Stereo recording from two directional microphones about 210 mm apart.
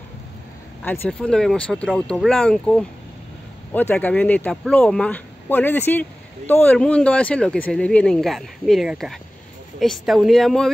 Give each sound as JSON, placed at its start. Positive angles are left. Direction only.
{"t": 0.8, "sound": "speech", "side_deg": 10}